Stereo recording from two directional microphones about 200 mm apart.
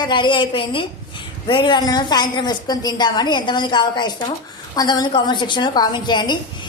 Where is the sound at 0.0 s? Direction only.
25° left (ahead or behind).